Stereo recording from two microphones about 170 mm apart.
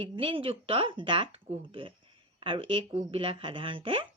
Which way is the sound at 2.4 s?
30° right (ahead or behind).